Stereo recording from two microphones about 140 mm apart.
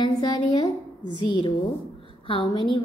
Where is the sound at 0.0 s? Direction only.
30° left (ahead or behind).